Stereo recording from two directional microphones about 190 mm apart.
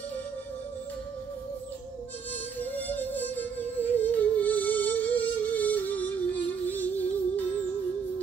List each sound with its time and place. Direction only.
2.6 s music: 10° left (ahead or behind)